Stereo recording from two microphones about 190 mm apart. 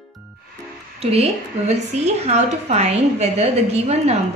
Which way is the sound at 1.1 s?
30° right (ahead or behind).